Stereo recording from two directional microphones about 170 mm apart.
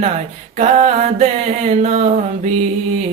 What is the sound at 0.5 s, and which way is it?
Mantra, 45° right (ahead or behind).